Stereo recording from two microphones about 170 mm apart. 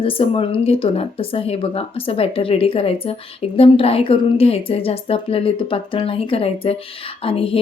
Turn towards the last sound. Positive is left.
turn(degrees=35)  # may be behind; listen again after turning